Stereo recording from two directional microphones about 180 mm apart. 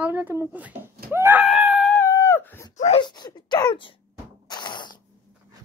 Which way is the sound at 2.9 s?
25° left (ahead or behind).